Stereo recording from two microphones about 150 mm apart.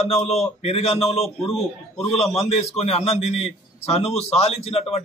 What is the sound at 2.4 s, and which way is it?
A man's voice, 45° left (ahead or behind).